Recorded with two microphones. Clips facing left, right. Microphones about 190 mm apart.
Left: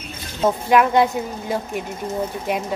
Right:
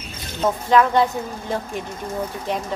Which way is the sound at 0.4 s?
10° left (ahead or behind).